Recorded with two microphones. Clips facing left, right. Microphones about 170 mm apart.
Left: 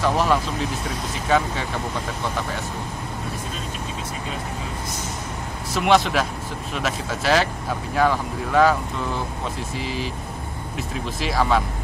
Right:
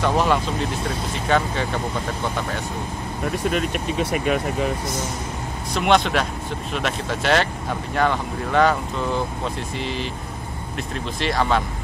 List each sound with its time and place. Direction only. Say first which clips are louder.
0.0 s speech: right 1 dB; centre (ahead or behind)
3.4 s speech: right 9 dB; 70° right (ahead or behind)
5.7 s speech: even; centre (ahead or behind)
9.8 s speech: even; 5° left (ahead or behind)
11.1 s speech: even; 5° left (ahead or behind)